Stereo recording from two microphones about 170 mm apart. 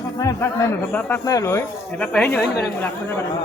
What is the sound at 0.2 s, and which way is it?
Speech, 20° left (ahead or behind).